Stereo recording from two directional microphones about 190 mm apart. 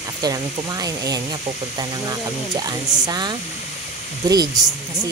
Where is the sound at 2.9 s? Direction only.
20° right (ahead or behind).